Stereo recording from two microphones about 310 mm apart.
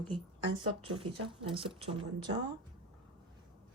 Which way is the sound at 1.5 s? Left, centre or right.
Centre.